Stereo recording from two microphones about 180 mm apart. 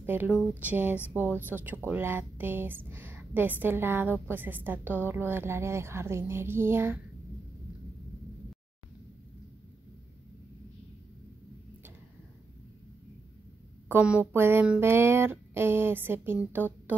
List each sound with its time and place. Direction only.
0.0 s speech: 10° right (ahead or behind)
13.8 s speech: 5° right (ahead or behind)